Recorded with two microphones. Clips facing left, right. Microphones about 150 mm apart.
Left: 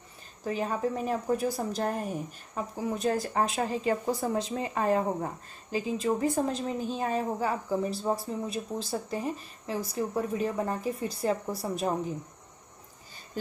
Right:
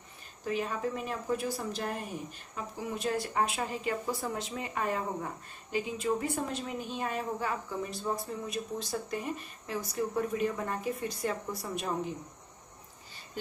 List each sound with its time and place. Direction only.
0.5 s a woman's voice: 40° left (ahead or behind)